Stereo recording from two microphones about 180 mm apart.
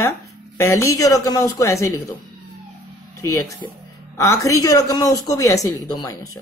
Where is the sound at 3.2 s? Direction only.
15° left (ahead or behind).